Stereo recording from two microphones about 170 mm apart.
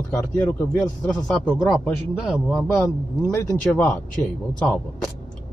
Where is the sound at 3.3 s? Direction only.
15° left (ahead or behind).